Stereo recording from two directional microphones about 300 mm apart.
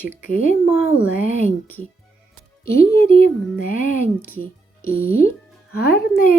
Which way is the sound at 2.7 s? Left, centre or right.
Left.